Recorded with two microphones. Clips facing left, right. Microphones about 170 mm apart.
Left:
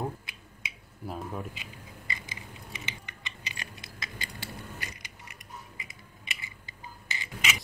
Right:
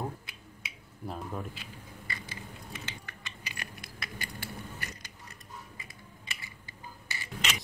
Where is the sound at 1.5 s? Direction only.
15° left (ahead or behind).